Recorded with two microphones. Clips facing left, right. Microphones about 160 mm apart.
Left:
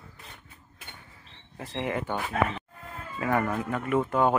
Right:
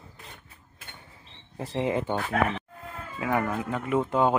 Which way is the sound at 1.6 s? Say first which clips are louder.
Right 4 dB; 25° right (ahead or behind).